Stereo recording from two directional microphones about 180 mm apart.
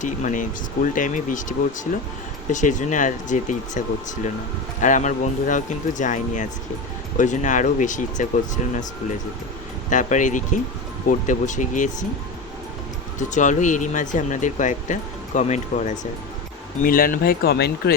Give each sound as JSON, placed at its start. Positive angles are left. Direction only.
{"t": 0.0, "sound": "speech", "side_deg": 45}
{"t": 9.9, "sound": "speech", "side_deg": 45}
{"t": 13.1, "sound": "speech", "side_deg": 45}
{"t": 16.8, "sound": "speech", "side_deg": 50}